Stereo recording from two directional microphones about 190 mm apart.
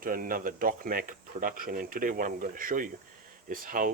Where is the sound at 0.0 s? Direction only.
50° right (ahead or behind).